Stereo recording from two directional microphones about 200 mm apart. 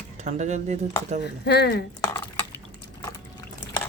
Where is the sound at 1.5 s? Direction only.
55° left (ahead or behind).